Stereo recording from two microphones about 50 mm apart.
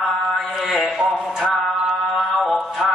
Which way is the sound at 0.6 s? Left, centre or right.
Centre.